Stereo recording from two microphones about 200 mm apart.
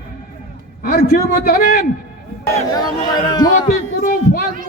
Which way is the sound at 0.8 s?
50° left (ahead or behind).